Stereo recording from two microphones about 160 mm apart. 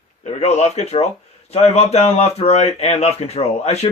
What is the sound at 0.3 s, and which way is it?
Speech, 45° left (ahead or behind).